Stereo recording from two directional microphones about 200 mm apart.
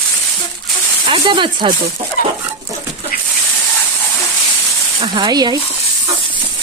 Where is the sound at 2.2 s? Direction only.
45° left (ahead or behind).